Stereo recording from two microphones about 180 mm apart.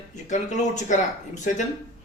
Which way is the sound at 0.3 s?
40° left (ahead or behind).